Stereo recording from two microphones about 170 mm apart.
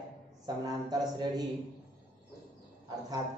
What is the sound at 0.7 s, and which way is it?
Speech, 25° right (ahead or behind).